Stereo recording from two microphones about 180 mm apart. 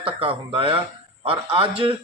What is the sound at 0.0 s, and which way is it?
A man's voice, 30° right (ahead or behind).